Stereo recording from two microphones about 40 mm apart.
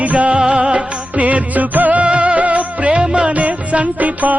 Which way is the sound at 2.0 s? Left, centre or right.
Right.